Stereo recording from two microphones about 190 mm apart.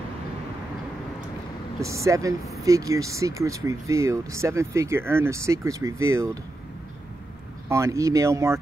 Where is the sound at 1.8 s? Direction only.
15° right (ahead or behind).